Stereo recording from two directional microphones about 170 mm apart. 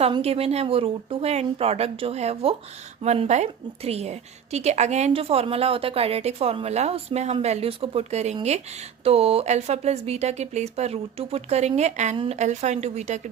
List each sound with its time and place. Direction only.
0.0 s a woman's voice: 35° right (ahead or behind)
12.1 s a woman's voice: 30° right (ahead or behind)
12.4 s a woman's voice: 45° right (ahead or behind)